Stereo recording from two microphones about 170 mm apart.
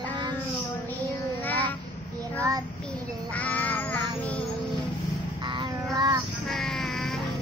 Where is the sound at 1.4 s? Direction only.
10° left (ahead or behind).